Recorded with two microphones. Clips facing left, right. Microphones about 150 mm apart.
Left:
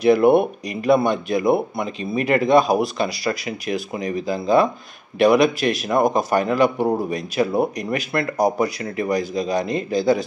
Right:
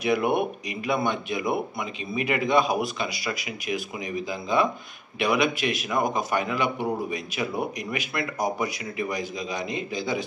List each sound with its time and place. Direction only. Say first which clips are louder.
0.0 s a man's voice: left 9 dB; 35° left (ahead or behind)